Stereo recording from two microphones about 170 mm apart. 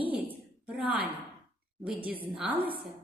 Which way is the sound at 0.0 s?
10° right (ahead or behind).